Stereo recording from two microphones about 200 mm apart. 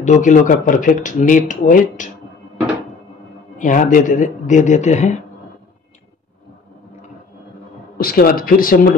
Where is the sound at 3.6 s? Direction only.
40° left (ahead or behind).